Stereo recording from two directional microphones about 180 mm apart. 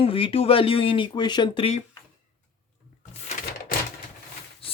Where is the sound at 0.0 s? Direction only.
30° left (ahead or behind).